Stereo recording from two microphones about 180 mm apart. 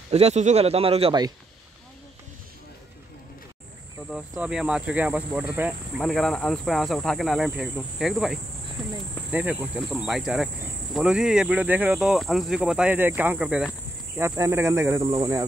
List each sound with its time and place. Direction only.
0.1 s speech: 35° right (ahead or behind)
4.1 s speech: 5° right (ahead or behind)
14.1 s speech: 15° right (ahead or behind)